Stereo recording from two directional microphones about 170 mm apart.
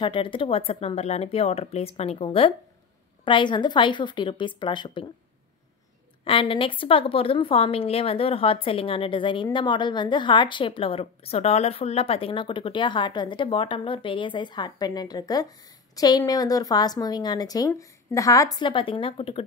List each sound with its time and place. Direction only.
0.0 s a woman's voice: 30° left (ahead or behind)
6.2 s a woman's voice: 30° left (ahead or behind)